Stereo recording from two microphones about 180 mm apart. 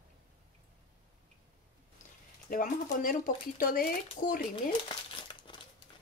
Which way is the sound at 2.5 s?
50° left (ahead or behind).